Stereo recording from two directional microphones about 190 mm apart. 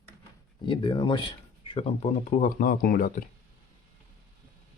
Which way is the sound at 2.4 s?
50° left (ahead or behind).